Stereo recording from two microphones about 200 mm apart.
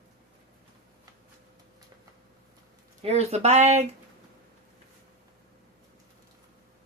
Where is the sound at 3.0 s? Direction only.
30° right (ahead or behind).